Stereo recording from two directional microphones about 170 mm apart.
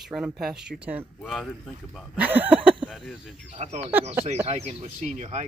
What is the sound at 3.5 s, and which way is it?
Speech, 40° right (ahead or behind).